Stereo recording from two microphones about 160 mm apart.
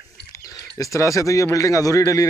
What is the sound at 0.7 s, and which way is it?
Speech, 20° left (ahead or behind).